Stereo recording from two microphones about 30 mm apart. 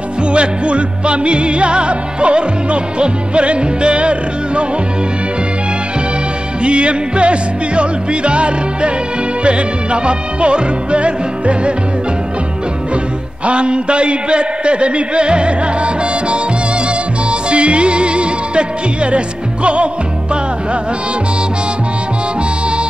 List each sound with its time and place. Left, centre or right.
0.3 s music: right
6.6 s music: right
13.5 s a man's voice: right
17.3 s music: right